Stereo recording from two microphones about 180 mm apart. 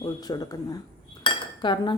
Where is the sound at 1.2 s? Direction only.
25° left (ahead or behind).